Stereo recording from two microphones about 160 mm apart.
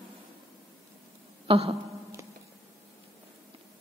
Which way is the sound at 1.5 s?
35° right (ahead or behind).